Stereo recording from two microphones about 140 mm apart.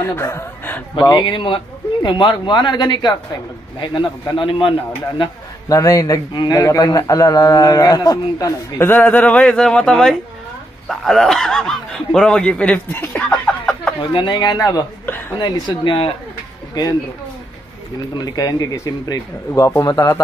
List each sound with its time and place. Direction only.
0.0 s speech: 15° left (ahead or behind)
0.9 s speech: 30° left (ahead or behind)
5.2 s a man's voice: 25° left (ahead or behind); by 13.9 s 5° left (ahead or behind)
14.1 s speech: 35° left (ahead or behind)
15.0 s a woman's voice: 15° left (ahead or behind)
15.3 s a man's voice: 30° left (ahead or behind)
18.1 s a man's voice: 30° left (ahead or behind)